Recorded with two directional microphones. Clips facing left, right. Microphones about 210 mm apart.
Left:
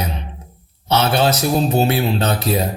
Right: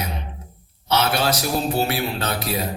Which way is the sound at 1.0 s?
30° left (ahead or behind).